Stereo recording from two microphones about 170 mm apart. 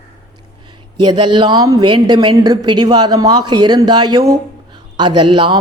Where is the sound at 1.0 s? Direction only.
30° right (ahead or behind).